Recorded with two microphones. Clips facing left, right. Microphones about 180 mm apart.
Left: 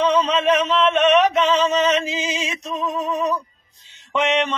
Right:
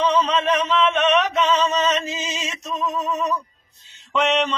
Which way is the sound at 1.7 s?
10° left (ahead or behind).